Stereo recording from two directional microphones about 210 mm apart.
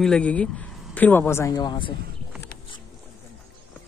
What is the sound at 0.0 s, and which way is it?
Speech, 5° left (ahead or behind).